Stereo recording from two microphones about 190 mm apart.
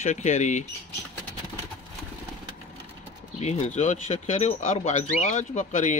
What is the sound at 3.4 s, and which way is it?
Speech, 35° left (ahead or behind).